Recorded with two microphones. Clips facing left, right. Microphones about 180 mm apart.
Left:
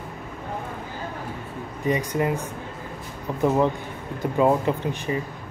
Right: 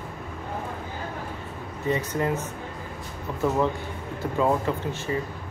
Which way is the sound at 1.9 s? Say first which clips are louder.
Left 2 dB; 15° left (ahead or behind).